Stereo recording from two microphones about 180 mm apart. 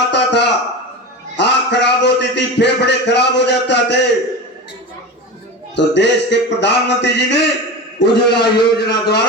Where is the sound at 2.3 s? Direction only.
75° left (ahead or behind).